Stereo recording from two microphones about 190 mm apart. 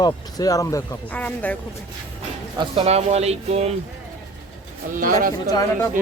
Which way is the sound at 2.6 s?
30° right (ahead or behind).